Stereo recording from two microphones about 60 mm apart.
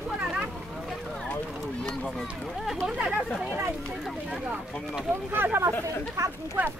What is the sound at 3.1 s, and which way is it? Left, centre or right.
Speech, right.